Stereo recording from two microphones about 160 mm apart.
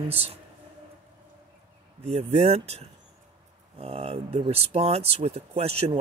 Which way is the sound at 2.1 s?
40° right (ahead or behind).